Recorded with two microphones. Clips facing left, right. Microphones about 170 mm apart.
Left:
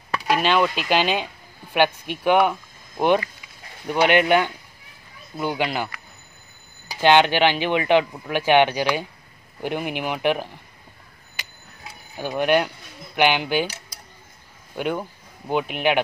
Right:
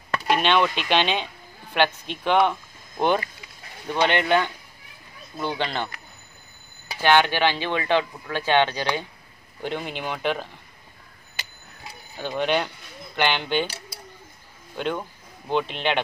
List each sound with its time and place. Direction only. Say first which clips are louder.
0.3 s speech: left 1 dB; 5° left (ahead or behind)
7.0 s speech: left 3 dB; 20° left (ahead or behind)
12.2 s speech: left 4 dB; 10° left (ahead or behind)
14.8 s speech: left 2 dB; 10° left (ahead or behind)